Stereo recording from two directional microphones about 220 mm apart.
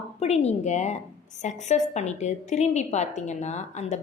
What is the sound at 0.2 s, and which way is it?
A woman's voice, 30° left (ahead or behind).